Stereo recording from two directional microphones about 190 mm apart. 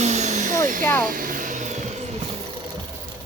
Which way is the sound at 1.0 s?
45° right (ahead or behind).